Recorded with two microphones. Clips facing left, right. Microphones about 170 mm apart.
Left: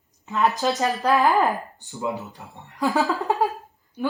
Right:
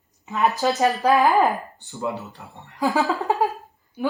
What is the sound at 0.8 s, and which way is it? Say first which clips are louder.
Speech: right 3 dB; 20° right (ahead or behind).